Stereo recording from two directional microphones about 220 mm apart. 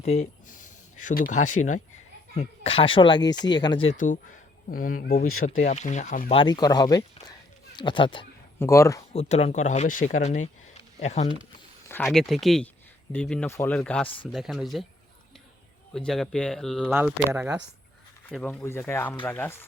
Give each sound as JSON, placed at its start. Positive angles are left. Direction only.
{"t": 0.0, "sound": "speech", "side_deg": 30}
{"t": 3.9, "sound": "speech", "side_deg": 35}
{"t": 5.2, "sound": "speech", "side_deg": 70}
{"t": 5.5, "sound": "speech", "side_deg": 35}
{"t": 6.3, "sound": "speech", "side_deg": 20}
{"t": 9.1, "sound": "speech", "side_deg": 30}
{"t": 11.9, "sound": "speech", "side_deg": 10}
{"t": 15.9, "sound": "speech", "side_deg": 5}
{"t": 18.3, "sound": "speech", "side_deg": 5}